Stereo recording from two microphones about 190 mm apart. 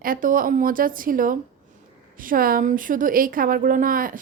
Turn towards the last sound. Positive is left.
turn(degrees=-45)  # may be behind; listen again after turning